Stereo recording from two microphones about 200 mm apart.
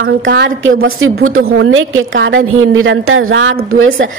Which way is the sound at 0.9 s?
90° right.